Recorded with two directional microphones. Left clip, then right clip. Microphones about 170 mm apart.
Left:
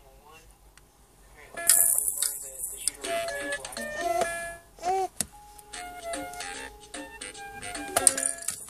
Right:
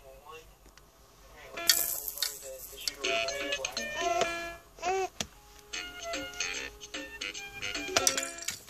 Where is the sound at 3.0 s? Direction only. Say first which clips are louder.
Left 1 dB; 15° right (ahead or behind).